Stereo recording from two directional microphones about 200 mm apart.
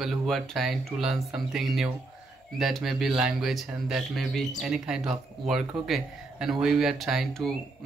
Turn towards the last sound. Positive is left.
turn(degrees=0)  # may be behind; listen again after turning